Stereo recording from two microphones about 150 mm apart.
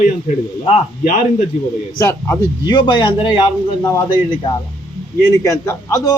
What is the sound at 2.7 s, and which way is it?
A man's voice, 30° left (ahead or behind).